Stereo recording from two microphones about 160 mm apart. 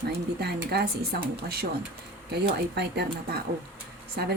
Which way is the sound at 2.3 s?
85° right.